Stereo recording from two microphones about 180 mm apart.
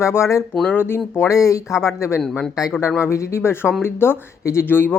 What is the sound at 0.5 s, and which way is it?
Speech, centre (ahead or behind).